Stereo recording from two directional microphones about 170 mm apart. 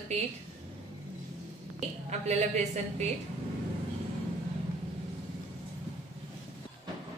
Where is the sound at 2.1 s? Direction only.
40° right (ahead or behind).